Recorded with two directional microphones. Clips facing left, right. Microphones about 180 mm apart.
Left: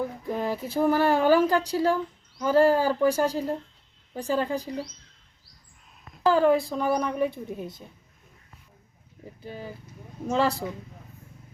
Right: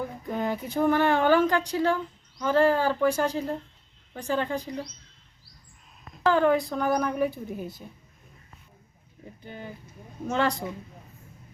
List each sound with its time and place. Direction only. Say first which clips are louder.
0.0 s a sound: left 1 dB; centre (ahead or behind)
1.2 s speech: left 1 dB; 10° left (ahead or behind)
4.1 s a woman's voice: left 2 dB; 35° left (ahead or behind)
4.4 s speech: left 1 dB; 10° left (ahead or behind)
6.2 s speech: left 1 dB; 5° left (ahead or behind)
7.3 s a woman's voice: even; 25° left (ahead or behind)
10.2 s speech: left 2 dB; 5° left (ahead or behind)